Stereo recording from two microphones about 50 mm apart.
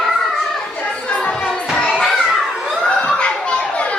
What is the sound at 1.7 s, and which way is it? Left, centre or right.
Children playing, centre.